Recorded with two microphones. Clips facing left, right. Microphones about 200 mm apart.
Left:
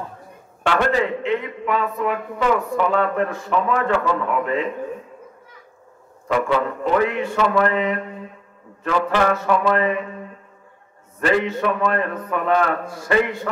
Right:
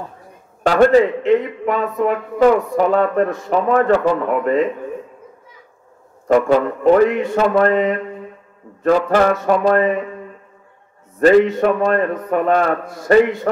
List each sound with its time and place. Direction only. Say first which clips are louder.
0.7 s speech: right 8 dB; 40° right (ahead or behind)
6.2 s speech: right 6 dB; 45° right (ahead or behind)
11.1 s speech: right 9 dB; 40° right (ahead or behind)